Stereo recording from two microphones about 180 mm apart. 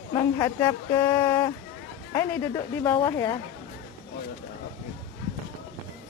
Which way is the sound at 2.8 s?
15° left (ahead or behind).